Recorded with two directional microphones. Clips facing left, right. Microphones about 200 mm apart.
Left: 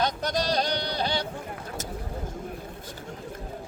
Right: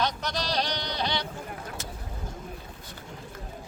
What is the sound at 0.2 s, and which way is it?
Sheep, 50° left (ahead or behind).